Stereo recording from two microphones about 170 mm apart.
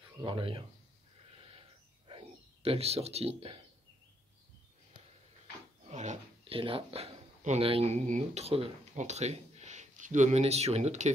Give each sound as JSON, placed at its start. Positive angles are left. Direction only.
{"t": 0.2, "sound": "speech", "side_deg": -30}
{"t": 1.3, "sound": "a sound", "side_deg": -35}
{"t": 5.9, "sound": "speech", "side_deg": -40}